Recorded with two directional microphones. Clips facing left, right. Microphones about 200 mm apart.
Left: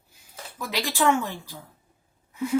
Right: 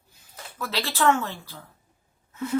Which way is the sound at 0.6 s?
15° left (ahead or behind).